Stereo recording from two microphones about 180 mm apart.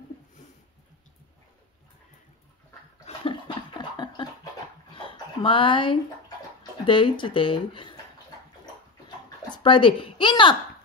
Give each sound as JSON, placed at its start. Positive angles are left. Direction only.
{"t": 3.1, "sound": "a sound", "side_deg": 30}
{"t": 6.6, "sound": "speech", "side_deg": 30}
{"t": 9.6, "sound": "a woman's voice", "side_deg": 25}